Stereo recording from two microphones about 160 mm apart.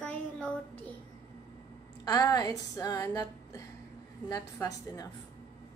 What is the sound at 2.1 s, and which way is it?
A woman's voice, 25° left (ahead or behind).